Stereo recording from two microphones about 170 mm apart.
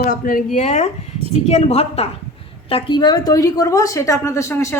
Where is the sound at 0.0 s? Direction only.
55° left (ahead or behind).